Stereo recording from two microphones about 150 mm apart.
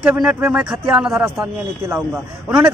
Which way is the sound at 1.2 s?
15° right (ahead or behind).